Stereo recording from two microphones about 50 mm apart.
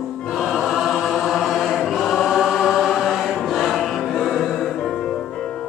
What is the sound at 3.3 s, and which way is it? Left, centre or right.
Music, centre.